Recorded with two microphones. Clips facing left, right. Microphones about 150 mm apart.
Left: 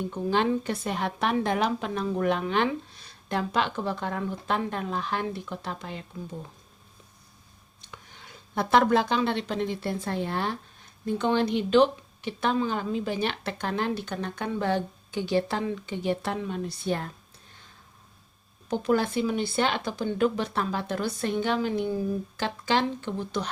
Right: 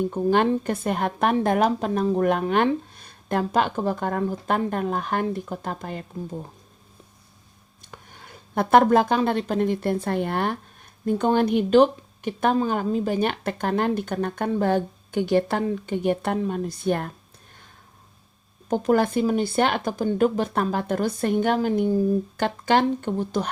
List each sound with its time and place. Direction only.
0.1 s speech: 50° right (ahead or behind)
7.8 s speech: 50° right (ahead or behind)
18.7 s speech: 45° right (ahead or behind)
22.4 s speech: 55° right (ahead or behind)